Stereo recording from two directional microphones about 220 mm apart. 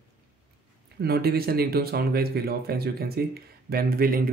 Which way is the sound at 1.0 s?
45° right (ahead or behind).